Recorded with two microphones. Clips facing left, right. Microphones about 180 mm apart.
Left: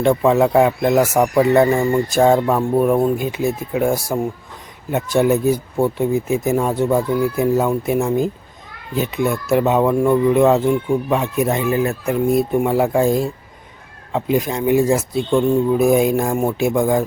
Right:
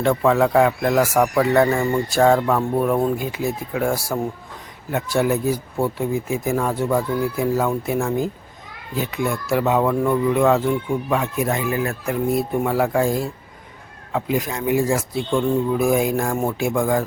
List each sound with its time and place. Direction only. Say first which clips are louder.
0.0 s speech: left 3 dB; 15° left (ahead or behind)